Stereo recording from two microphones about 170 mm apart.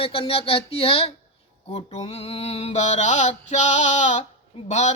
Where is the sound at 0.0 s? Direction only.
35° left (ahead or behind).